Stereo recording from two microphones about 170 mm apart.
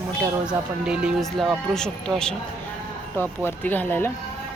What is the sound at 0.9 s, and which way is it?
Speech, centre (ahead or behind).